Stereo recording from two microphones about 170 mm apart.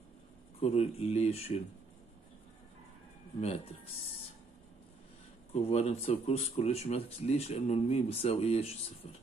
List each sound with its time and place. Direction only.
0.6 s speech: 35° left (ahead or behind)
3.3 s speech: 35° left (ahead or behind)
5.5 s speech: 40° left (ahead or behind)